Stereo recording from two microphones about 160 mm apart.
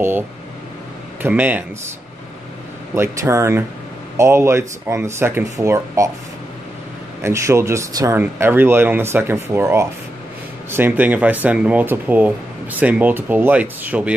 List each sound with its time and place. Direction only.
1.2 s speech: 10° right (ahead or behind)
2.9 s speech: 20° right (ahead or behind)
7.2 s speech: 15° right (ahead or behind)